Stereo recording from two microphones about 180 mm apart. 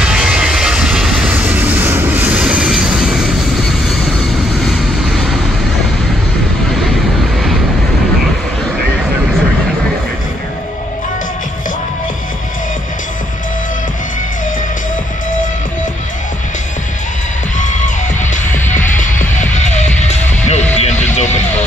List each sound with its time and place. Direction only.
0.0 s vehicle: 5° right (ahead or behind)
17.6 s music: 45° left (ahead or behind)